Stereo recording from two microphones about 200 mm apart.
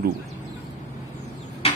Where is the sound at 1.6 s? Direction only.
30° left (ahead or behind).